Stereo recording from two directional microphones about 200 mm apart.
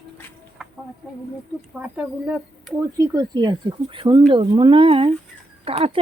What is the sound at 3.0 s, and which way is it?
Speech, 20° right (ahead or behind).